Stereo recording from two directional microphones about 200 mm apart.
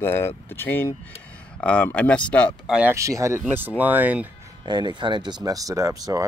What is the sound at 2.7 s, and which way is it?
Speech, 10° right (ahead or behind).